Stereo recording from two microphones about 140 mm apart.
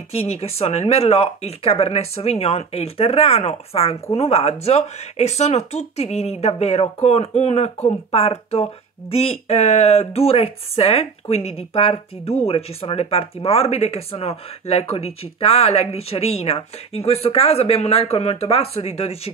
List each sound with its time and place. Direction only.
0.1 s speech: 45° left (ahead or behind)